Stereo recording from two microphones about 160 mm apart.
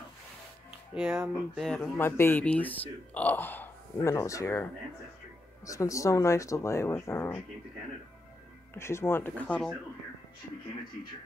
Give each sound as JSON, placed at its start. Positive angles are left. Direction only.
{"t": 0.9, "sound": "speech", "side_deg": -5}
{"t": 2.0, "sound": "speech", "side_deg": 15}
{"t": 5.7, "sound": "speech", "side_deg": 20}
{"t": 8.7, "sound": "speech", "side_deg": 15}